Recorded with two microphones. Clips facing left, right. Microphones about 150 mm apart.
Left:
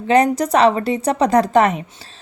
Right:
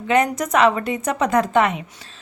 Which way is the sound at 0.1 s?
35° left (ahead or behind).